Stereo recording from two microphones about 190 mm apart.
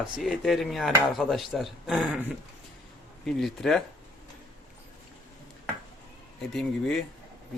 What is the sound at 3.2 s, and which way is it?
Speech, centre (ahead or behind).